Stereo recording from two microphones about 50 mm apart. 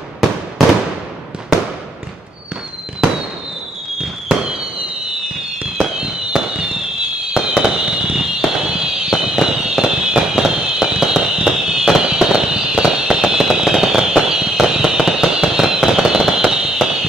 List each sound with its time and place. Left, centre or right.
6.0 s fireworks: centre